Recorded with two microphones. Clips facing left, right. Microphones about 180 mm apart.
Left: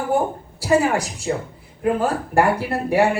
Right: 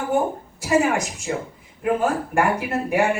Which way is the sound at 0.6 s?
35° left (ahead or behind).